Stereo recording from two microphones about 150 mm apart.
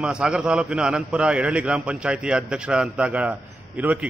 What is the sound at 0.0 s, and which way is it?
A man's voice, 5° right (ahead or behind).